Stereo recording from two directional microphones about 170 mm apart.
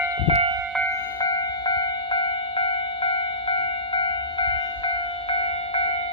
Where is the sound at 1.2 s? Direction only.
25° left (ahead or behind).